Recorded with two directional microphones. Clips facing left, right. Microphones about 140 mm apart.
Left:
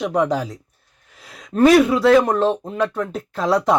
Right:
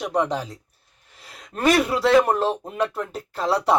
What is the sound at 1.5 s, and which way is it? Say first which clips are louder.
Speech: left 7 dB; centre (ahead or behind).